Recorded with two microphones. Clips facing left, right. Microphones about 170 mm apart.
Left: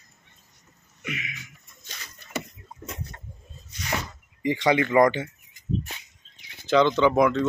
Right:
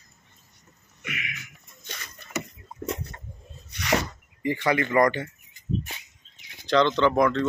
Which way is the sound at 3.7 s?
75° right (ahead or behind).